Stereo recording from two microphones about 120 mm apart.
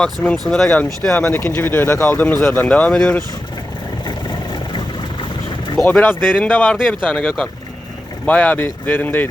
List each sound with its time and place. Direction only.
0.0 s speech: 5° left (ahead or behind)
4.0 s vehicle: 40° left (ahead or behind)
5.7 s speech: 20° left (ahead or behind)
7.1 s speech: 5° left (ahead or behind)